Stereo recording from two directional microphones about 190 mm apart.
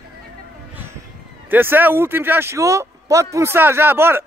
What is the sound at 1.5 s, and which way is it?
A man's voice, 10° right (ahead or behind).